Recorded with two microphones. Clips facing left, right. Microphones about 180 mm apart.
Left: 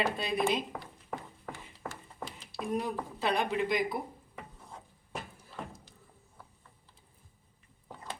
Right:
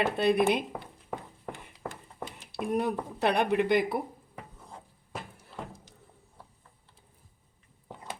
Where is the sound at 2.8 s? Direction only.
65° right (ahead or behind).